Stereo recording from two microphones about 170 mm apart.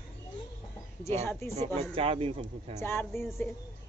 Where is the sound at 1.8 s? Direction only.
35° right (ahead or behind).